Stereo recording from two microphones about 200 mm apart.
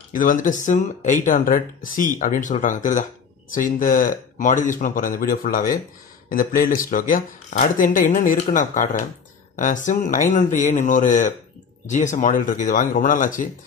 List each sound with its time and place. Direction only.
0.1 s speech: 45° left (ahead or behind)